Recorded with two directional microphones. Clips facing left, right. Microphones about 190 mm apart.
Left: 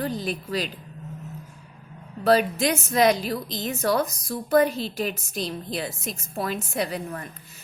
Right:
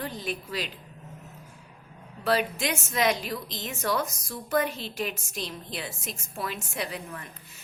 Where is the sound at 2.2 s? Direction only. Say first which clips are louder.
Left 6 dB; 40° left (ahead or behind).